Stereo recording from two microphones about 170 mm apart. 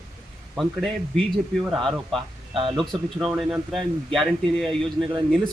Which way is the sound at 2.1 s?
30° right (ahead or behind).